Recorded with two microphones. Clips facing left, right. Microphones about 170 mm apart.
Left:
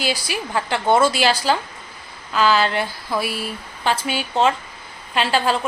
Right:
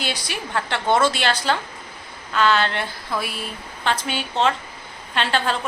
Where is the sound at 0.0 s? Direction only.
5° left (ahead or behind).